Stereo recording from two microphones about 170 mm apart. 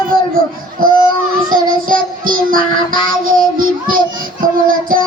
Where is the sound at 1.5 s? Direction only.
55° right (ahead or behind).